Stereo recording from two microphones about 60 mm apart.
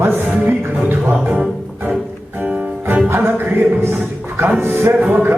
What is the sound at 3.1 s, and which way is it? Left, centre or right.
Music, right.